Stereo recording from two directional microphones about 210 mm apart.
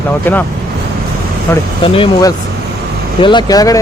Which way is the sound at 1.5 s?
10° left (ahead or behind).